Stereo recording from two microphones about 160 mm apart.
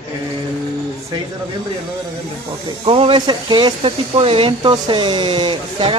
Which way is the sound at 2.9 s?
35° right (ahead or behind).